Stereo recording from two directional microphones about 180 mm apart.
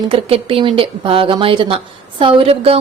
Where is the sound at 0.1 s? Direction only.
30° right (ahead or behind).